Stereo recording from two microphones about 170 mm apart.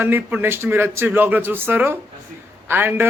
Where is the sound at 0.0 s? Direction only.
10° right (ahead or behind).